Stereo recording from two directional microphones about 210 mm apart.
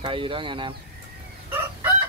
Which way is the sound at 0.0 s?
25° right (ahead or behind).